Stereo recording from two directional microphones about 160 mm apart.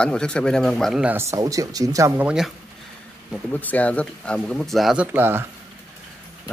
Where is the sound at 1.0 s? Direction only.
15° right (ahead or behind).